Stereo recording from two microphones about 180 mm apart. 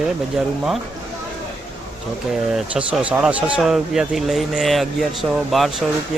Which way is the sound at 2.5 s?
5° right (ahead or behind).